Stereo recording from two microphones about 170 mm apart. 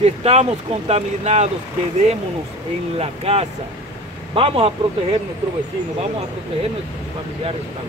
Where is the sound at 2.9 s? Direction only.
35° right (ahead or behind).